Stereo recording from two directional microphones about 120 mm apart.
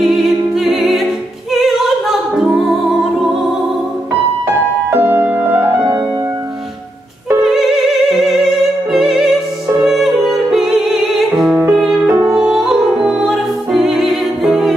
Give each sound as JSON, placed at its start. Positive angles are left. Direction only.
{"t": 0.0, "sound": "music", "side_deg": 0}
{"t": 4.9, "sound": "music", "side_deg": -20}
{"t": 7.4, "sound": "music", "side_deg": 0}